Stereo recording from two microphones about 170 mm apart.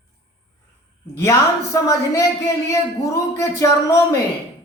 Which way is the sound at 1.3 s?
20° left (ahead or behind).